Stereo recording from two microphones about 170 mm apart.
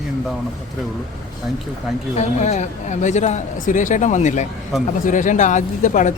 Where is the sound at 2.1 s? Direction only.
40° left (ahead or behind).